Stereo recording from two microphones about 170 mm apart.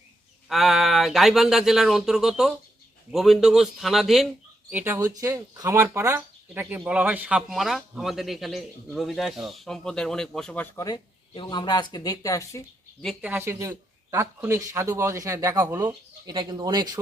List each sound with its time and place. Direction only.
0.4 s speech: centre (ahead or behind)
4.7 s speech: 10° right (ahead or behind); by 10.7 s 5° left (ahead or behind)
10.8 s speech: 25° left (ahead or behind)
13.2 s speech: 15° right (ahead or behind)